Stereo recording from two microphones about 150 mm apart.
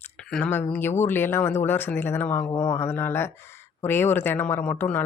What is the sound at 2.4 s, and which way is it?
Speech, 30° left (ahead or behind).